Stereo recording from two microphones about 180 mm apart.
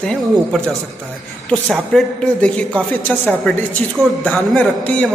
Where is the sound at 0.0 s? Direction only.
5° left (ahead or behind).